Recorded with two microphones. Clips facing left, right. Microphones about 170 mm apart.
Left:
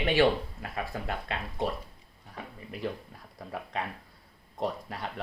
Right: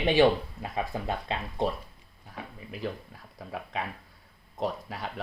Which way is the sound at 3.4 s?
5° right (ahead or behind).